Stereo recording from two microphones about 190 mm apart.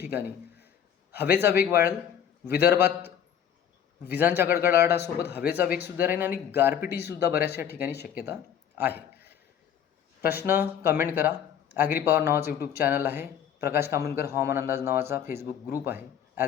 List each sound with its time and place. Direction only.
0.0 s a man's voice: 10° right (ahead or behind)
2.5 s speech: 55° left (ahead or behind)
2.7 s a man's voice: 10° right (ahead or behind)
4.1 s a man's voice: 10° right (ahead or behind)
8.1 s a sound: 10° right (ahead or behind)
10.2 s a man's voice: 10° right (ahead or behind)
12.5 s speech: 55° left (ahead or behind)
12.8 s a man's voice: 10° right (ahead or behind)
15.9 s a sound: 10° right (ahead or behind)